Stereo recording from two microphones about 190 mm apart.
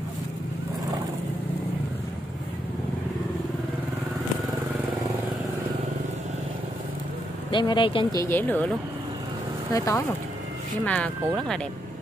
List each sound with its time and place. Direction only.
7.5 s speech: 25° left (ahead or behind); by 8.7 s 10° left (ahead or behind)
9.8 s speech: 15° left (ahead or behind)
10.9 s speech: 5° left (ahead or behind)